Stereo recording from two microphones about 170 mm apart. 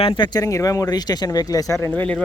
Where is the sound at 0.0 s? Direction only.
30° left (ahead or behind).